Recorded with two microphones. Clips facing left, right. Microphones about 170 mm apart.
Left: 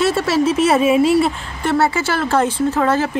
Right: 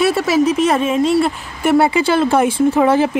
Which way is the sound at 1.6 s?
10° right (ahead or behind).